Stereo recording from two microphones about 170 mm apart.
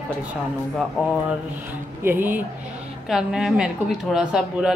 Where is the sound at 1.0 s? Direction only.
Centre (ahead or behind).